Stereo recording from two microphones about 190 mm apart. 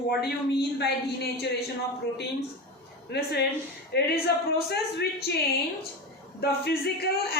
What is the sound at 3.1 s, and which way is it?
Speech, 60° left (ahead or behind).